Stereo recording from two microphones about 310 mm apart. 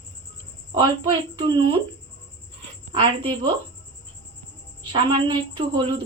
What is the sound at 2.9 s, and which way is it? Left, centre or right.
Speech, centre.